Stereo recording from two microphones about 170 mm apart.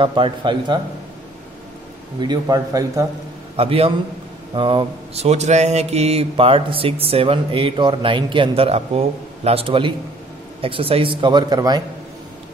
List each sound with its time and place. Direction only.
0.0 s speech: 30° right (ahead or behind)
2.1 s speech: 25° right (ahead or behind)
3.5 s mantra: 35° right (ahead or behind)
10.6 s speech: 35° right (ahead or behind)